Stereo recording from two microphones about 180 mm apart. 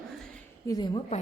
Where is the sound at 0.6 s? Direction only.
20° left (ahead or behind).